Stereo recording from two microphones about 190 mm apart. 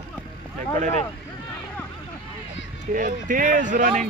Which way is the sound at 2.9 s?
45° right (ahead or behind).